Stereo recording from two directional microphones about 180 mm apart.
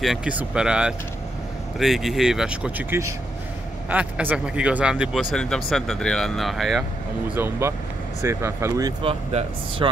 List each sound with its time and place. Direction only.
0.0 s speech: 5° right (ahead or behind)
7.2 s speech: 10° right (ahead or behind)
9.0 s speech: 30° right (ahead or behind)